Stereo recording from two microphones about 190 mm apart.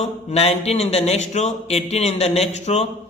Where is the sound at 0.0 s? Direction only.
35° left (ahead or behind).